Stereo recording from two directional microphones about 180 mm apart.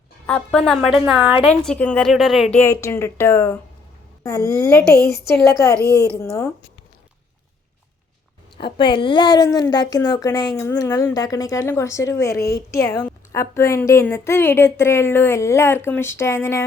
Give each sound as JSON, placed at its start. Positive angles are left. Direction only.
{"t": 0.3, "sound": "a woman's voice", "side_deg": 5}
{"t": 1.5, "sound": "a woman's voice", "side_deg": 5}
{"t": 5.8, "sound": "a woman's voice", "side_deg": -15}
{"t": 6.1, "sound": "a woman's voice", "side_deg": 15}
{"t": 8.5, "sound": "a woman's voice", "side_deg": 30}